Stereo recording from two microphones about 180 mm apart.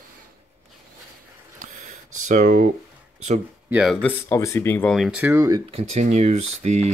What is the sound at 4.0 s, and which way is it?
Speech, 10° left (ahead or behind).